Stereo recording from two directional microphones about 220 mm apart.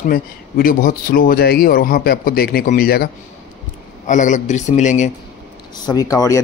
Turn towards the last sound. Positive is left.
turn(degrees=15)  # may be behind; listen again after turning